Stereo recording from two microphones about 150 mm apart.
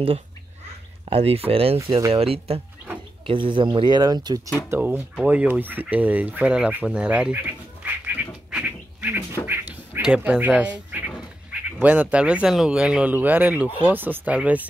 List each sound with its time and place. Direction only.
1.0 s speech: 40° right (ahead or behind)
4.6 s speech: 10° right (ahead or behind)
8.5 s quack: 10° right (ahead or behind)
11.8 s speech: 10° right (ahead or behind)